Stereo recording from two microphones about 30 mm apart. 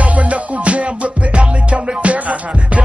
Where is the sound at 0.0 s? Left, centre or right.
Right.